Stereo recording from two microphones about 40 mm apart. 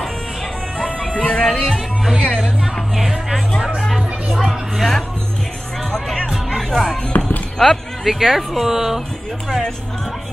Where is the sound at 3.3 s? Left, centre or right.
Centre.